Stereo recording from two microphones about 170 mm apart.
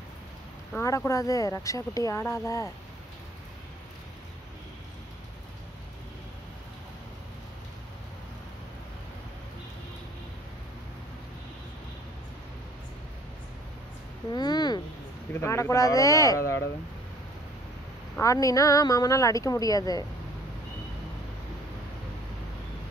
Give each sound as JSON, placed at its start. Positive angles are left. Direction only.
{"t": 0.7, "sound": "speech", "side_deg": 20}
{"t": 14.3, "sound": "a sound", "side_deg": 25}
{"t": 15.3, "sound": "speech", "side_deg": 15}
{"t": 18.2, "sound": "speech", "side_deg": 20}